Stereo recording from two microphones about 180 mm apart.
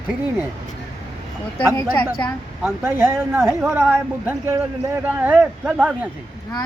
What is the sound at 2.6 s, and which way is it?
Speech, 10° right (ahead or behind).